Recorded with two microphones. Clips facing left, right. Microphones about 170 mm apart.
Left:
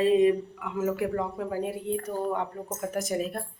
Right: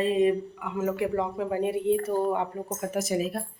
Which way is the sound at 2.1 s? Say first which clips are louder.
Right 4 dB; 15° right (ahead or behind).